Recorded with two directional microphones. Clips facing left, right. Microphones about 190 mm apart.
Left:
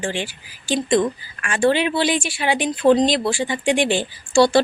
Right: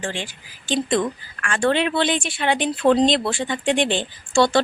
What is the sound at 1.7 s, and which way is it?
Speech, 5° left (ahead or behind).